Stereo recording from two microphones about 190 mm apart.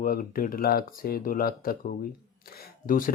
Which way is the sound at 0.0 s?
50° left (ahead or behind).